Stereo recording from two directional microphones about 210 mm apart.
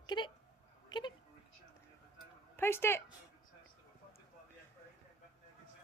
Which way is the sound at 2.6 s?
10° left (ahead or behind).